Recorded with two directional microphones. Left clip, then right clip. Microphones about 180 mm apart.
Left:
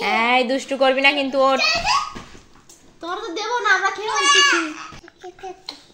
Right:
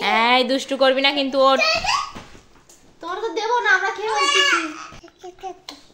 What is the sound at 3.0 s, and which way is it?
A woman's voice, 10° right (ahead or behind).